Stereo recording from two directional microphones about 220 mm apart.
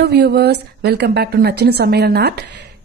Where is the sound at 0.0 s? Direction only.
50° right (ahead or behind).